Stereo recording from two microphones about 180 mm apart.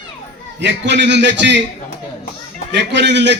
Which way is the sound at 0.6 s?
80° right.